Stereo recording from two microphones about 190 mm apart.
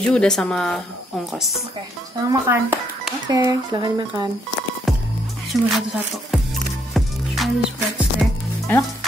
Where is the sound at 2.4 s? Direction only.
10° right (ahead or behind).